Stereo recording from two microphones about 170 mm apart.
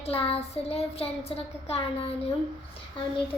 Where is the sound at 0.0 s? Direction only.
35° left (ahead or behind).